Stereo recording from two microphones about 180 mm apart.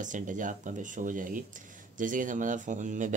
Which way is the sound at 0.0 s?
45° right (ahead or behind).